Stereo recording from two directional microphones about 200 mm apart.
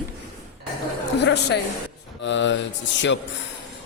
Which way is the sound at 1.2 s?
60° left (ahead or behind).